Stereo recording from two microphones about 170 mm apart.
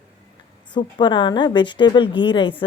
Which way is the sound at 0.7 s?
25° left (ahead or behind).